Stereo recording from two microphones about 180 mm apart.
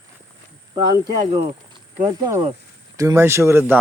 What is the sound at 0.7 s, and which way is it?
Speech, 25° right (ahead or behind).